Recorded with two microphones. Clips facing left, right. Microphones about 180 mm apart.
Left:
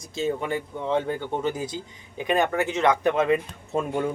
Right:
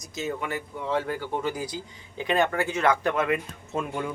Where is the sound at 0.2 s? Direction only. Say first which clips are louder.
Left 4 dB; 30° left (ahead or behind).